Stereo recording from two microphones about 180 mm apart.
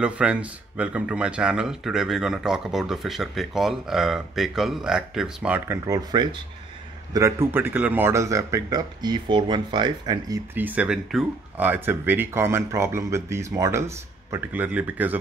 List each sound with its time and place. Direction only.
0.0 s speech: 5° right (ahead or behind)
5.9 s speech: 20° right (ahead or behind)